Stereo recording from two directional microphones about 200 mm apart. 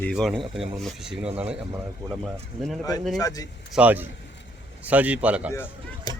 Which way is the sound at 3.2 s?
20° left (ahead or behind).